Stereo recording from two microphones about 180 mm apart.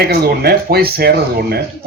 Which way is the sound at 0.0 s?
60° right (ahead or behind).